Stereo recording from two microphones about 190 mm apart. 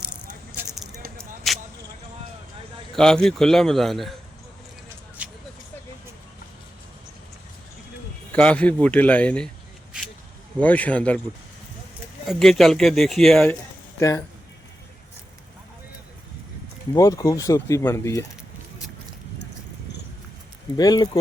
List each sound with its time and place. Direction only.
0.5 s a sound: 5° right (ahead or behind)
2.9 s speech: 5° left (ahead or behind)
5.2 s vehicle: 10° right (ahead or behind)
8.3 s speech: 5° left (ahead or behind)
10.6 s speech: 10° left (ahead or behind)
12.2 s speech: centre (ahead or behind)
14.0 s speech: 15° left (ahead or behind)
16.9 s speech: 20° left (ahead or behind)
20.7 s speech: 20° left (ahead or behind)